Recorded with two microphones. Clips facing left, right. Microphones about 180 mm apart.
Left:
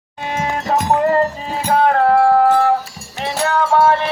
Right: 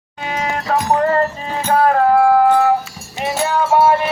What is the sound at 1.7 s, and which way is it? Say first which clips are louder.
Music: even; 5° right (ahead or behind).